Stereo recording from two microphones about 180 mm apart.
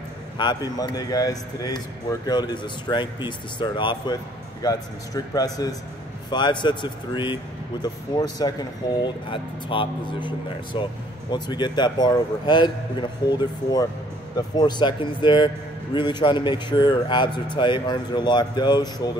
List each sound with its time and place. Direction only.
0.4 s speech: 25° left (ahead or behind)